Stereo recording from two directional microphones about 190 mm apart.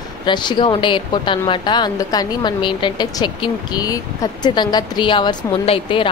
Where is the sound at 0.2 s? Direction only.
25° left (ahead or behind).